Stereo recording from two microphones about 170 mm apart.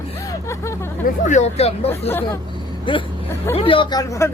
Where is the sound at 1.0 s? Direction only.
45° left (ahead or behind).